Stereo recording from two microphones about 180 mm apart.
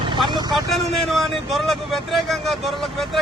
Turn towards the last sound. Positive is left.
turn(degrees=0)  # may be behind; listen again after turning